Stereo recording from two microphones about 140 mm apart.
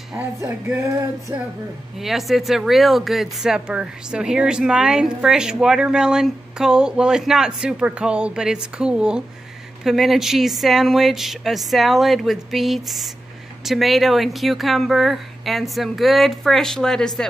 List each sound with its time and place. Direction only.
0.1 s music: 15° right (ahead or behind)
1.3 s music: 15° right (ahead or behind)
2.0 s speech: centre (ahead or behind)